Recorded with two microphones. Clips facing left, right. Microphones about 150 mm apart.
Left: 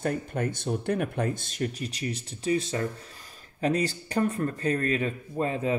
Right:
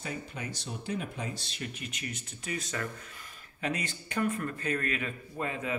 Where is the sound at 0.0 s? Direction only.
55° left (ahead or behind).